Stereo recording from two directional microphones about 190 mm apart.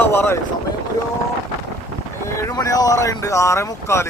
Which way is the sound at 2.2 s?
20° left (ahead or behind).